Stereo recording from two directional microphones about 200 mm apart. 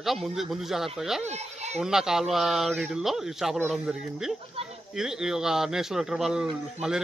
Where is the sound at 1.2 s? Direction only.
35° right (ahead or behind).